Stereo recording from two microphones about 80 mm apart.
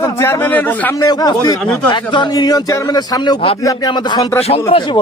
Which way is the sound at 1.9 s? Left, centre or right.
Left.